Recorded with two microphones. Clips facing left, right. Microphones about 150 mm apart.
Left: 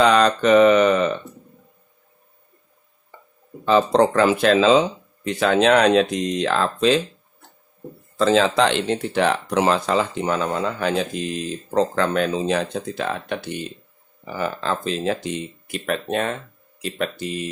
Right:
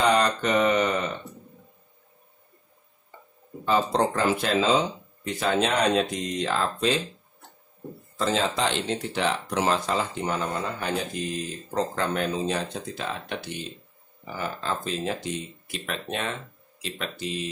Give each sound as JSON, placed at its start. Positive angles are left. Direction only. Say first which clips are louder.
{"t": 0.1, "sound": "speech", "louder": "left 7 dB", "side_deg": 90}
{"t": 3.6, "sound": "speech", "louder": "left 7 dB", "side_deg": 90}
{"t": 8.2, "sound": "speech", "louder": "left 8 dB", "side_deg": 90}
{"t": 14.3, "sound": "speech", "louder": "left 6 dB", "side_deg": 85}
{"t": 15.6, "sound": "speech", "louder": "left 8 dB", "side_deg": 50}